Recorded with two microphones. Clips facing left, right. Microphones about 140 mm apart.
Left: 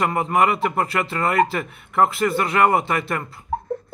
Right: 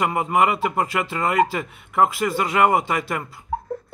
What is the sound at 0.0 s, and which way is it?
A man's voice, 10° right (ahead or behind).